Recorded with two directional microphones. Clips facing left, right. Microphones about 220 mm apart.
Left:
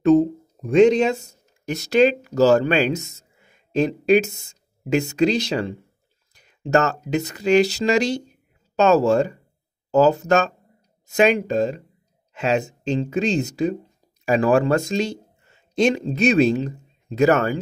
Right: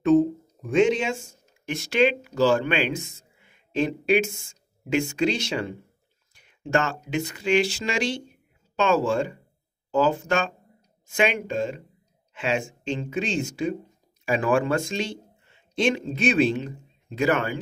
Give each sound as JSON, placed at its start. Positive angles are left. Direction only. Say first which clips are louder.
{"t": 0.0, "sound": "speech", "louder": "left 3 dB", "side_deg": 40}